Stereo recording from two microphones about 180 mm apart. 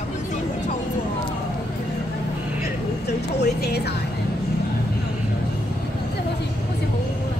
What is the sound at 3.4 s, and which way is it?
Music, 65° left (ahead or behind).